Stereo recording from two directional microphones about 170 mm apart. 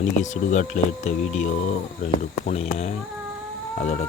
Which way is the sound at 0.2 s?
45° left (ahead or behind).